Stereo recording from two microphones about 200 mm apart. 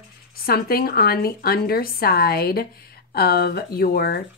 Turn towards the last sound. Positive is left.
turn(degrees=50)  # may be behind; listen again after turning